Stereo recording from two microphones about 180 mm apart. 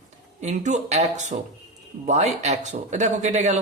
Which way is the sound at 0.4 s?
40° right (ahead or behind).